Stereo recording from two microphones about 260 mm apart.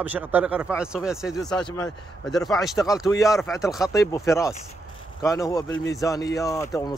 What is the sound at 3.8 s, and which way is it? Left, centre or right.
A man's voice, centre.